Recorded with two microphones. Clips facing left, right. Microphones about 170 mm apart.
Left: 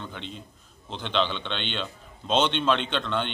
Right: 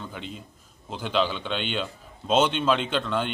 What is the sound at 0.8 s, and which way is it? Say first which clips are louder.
Speech: right 2 dB; 5° right (ahead or behind).